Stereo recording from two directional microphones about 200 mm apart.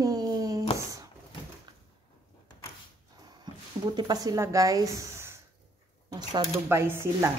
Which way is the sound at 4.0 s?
20° right (ahead or behind).